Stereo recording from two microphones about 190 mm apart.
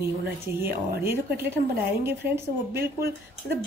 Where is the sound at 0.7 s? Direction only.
55° right (ahead or behind).